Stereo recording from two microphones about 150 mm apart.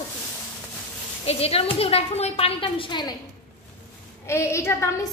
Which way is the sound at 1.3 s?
40° left (ahead or behind).